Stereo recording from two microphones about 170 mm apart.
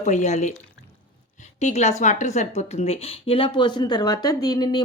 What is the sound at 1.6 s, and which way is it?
Speech, 40° left (ahead or behind).